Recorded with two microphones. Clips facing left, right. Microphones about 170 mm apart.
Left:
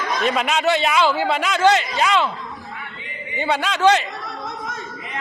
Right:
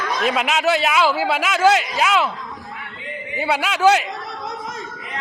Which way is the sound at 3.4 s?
5° right (ahead or behind).